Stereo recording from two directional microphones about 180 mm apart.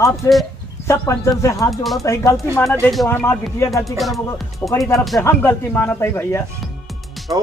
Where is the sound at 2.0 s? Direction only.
15° left (ahead or behind).